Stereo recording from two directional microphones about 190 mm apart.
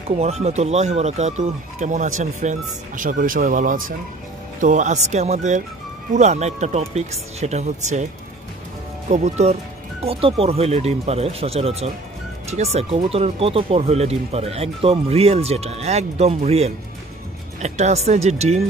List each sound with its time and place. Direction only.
0.2 s speech: 35° right (ahead or behind)
9.1 s speech: 35° right (ahead or behind)